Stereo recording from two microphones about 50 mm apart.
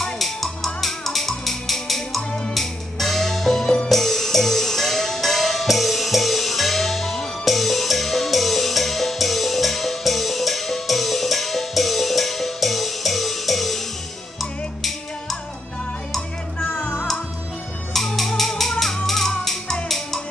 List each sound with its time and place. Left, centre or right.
0.0 s music: centre
16.6 s music: left
17.9 s music: centre